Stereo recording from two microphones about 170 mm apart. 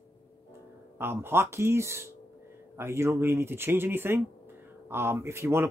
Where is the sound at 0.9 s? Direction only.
15° right (ahead or behind).